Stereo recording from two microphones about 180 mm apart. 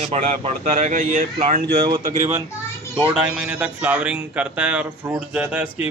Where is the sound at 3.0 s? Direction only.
5° right (ahead or behind).